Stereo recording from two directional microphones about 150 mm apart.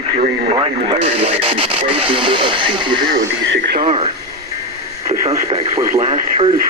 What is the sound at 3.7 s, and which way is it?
Radio, 90° right.